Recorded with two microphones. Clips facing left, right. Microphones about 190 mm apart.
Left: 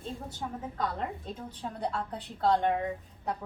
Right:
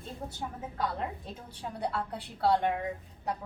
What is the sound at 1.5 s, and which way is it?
A woman's voice, 10° right (ahead or behind).